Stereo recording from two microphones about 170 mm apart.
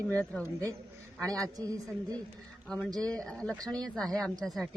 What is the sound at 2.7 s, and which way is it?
Speech, 5° left (ahead or behind).